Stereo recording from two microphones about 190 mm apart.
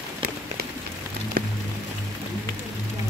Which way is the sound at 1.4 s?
50° right (ahead or behind).